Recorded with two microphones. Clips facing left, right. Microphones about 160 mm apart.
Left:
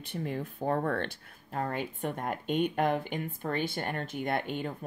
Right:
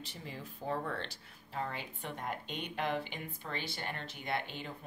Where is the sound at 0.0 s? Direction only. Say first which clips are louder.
Left 11 dB; 55° left (ahead or behind).